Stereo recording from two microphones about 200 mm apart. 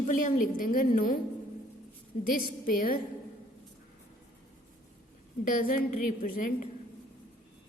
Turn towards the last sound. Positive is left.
turn(degrees=45)  # may be behind; listen again after turning